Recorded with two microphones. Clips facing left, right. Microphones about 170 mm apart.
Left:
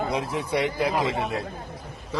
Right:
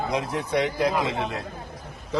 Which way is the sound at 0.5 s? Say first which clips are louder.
Right 1 dB; 10° left (ahead or behind).